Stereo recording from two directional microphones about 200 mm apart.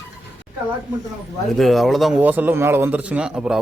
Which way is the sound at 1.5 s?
Centre (ahead or behind).